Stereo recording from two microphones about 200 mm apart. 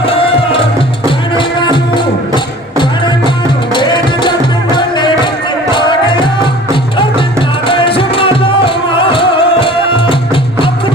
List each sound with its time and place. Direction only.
0.0 s music: 25° left (ahead or behind)
3.8 s music: 25° left (ahead or behind)
7.7 s music: 25° left (ahead or behind)